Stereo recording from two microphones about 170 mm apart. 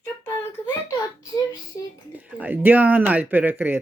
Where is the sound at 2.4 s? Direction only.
10° right (ahead or behind).